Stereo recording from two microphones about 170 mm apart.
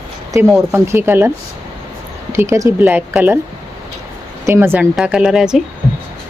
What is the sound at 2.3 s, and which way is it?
Speech, 15° right (ahead or behind).